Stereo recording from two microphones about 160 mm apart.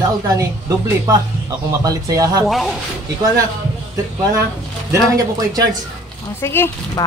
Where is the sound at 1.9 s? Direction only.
20° right (ahead or behind).